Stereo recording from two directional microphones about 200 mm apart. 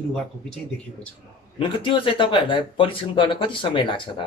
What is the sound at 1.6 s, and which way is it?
Speech, 25° left (ahead or behind).